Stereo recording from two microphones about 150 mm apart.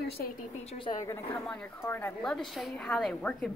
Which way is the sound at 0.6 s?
35° left (ahead or behind).